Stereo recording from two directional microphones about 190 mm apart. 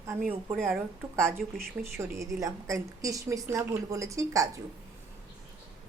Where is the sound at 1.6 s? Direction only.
15° right (ahead or behind).